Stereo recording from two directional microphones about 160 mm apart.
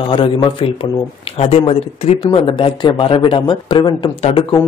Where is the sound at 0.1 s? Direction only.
30° left (ahead or behind).